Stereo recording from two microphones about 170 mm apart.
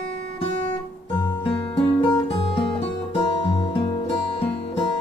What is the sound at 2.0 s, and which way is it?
Music, 30° left (ahead or behind).